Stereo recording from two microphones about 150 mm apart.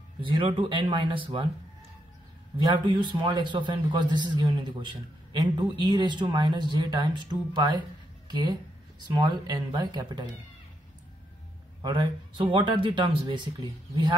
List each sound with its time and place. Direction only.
0.2 s a man's voice: 35° right (ahead or behind)
2.5 s a man's voice: 30° right (ahead or behind)
11.8 s a man's voice: 30° right (ahead or behind)